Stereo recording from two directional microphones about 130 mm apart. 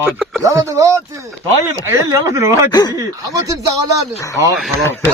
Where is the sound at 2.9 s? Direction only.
25° right (ahead or behind).